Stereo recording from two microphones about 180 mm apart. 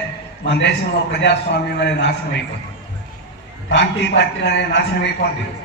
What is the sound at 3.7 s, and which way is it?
A man's voice, 80° left.